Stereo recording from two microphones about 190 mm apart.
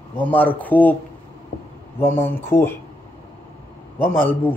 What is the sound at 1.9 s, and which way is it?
Speech, 10° left (ahead or behind).